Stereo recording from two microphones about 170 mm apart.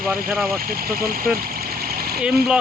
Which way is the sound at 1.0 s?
60° right (ahead or behind).